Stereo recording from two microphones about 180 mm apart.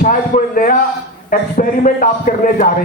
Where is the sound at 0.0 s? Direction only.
50° left (ahead or behind).